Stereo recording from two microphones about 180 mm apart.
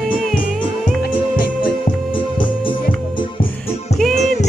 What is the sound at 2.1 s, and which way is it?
Music, 25° left (ahead or behind).